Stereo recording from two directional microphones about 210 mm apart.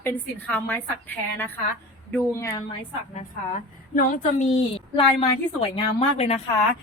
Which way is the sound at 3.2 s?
40° left (ahead or behind).